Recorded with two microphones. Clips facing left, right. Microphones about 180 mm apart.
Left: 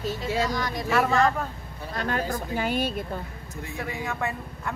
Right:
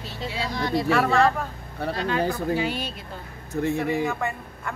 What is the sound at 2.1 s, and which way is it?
Speech, 65° right (ahead or behind).